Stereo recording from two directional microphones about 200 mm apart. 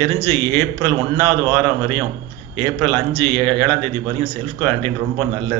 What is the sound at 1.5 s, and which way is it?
Speech, 10° left (ahead or behind).